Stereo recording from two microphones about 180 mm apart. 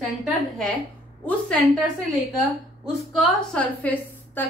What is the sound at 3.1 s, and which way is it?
A woman's voice, 5° left (ahead or behind).